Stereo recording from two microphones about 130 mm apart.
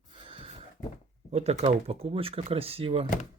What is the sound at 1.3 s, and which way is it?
Speech, 55° right (ahead or behind).